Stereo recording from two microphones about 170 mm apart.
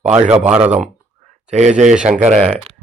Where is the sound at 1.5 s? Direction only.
45° right (ahead or behind).